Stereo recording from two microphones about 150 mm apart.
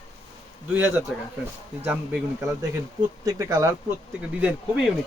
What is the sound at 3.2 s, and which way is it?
Speech, 20° right (ahead or behind).